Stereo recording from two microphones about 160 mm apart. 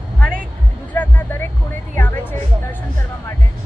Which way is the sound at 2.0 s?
10° left (ahead or behind).